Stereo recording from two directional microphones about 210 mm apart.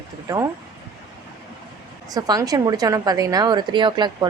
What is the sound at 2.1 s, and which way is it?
A woman's voice, 15° right (ahead or behind).